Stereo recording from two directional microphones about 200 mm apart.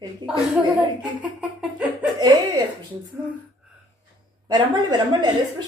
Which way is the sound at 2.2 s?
20° right (ahead or behind).